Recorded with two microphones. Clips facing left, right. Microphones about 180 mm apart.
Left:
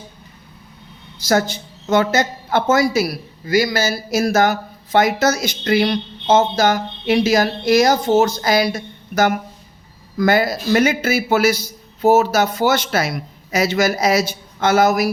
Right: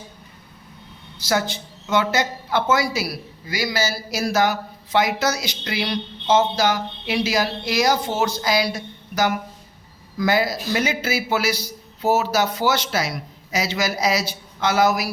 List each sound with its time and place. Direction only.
1.3 s a woman's voice: 45° left (ahead or behind)